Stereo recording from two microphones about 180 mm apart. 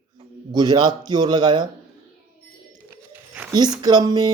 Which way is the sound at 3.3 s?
10° right (ahead or behind).